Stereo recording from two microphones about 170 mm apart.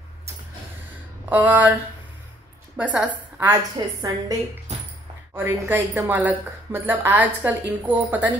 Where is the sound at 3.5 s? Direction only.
20° right (ahead or behind).